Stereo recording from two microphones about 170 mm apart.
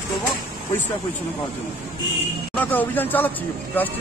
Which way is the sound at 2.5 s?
10° left (ahead or behind).